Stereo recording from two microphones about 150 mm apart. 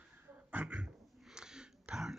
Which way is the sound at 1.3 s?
5° right (ahead or behind).